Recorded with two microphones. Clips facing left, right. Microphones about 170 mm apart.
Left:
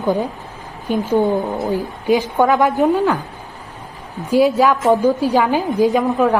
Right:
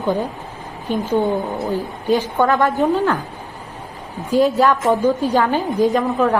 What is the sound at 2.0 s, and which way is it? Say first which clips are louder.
Speech: left 2 dB; 15° left (ahead or behind).